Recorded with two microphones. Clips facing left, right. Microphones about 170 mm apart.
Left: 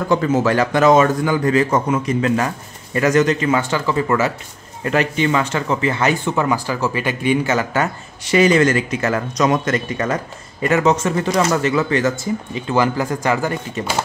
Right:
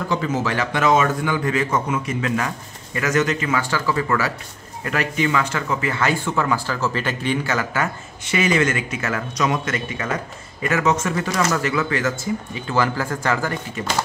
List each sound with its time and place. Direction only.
0.1 s a man's voice: 50° left (ahead or behind); by 13.5 s 15° left (ahead or behind)
13.8 s speech: 30° left (ahead or behind)